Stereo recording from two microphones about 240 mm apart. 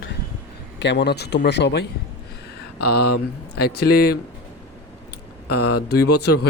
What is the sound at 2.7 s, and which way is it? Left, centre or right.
Speech, left.